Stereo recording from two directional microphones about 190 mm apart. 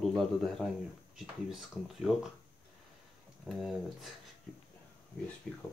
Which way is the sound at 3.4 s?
Centre (ahead or behind).